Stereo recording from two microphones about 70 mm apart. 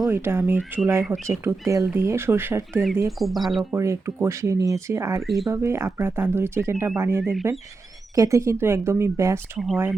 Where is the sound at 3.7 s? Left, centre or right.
Right.